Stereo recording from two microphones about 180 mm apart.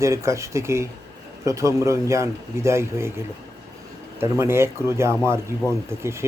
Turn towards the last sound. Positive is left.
turn(degrees=-15)  # may be behind; listen again after turning